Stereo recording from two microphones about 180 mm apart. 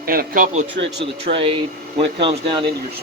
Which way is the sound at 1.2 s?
30° right (ahead or behind).